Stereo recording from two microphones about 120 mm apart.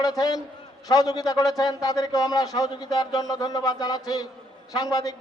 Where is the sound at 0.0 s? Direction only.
30° left (ahead or behind).